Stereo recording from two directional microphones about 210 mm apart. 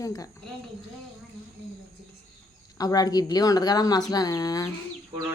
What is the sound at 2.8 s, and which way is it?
Speech, 15° left (ahead or behind).